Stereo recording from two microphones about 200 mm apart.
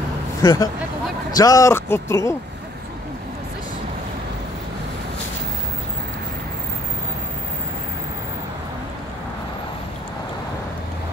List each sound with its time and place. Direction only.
0.4 s speech: 15° left (ahead or behind)